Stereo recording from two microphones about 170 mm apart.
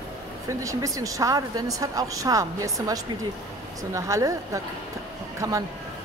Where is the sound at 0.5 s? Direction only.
20° right (ahead or behind).